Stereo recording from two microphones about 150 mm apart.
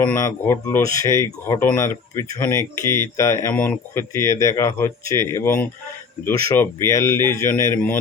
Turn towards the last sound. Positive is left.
turn(degrees=15)  # may be behind; listen again after turning